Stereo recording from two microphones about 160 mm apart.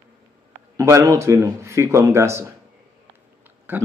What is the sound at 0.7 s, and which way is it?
Speech, 20° right (ahead or behind).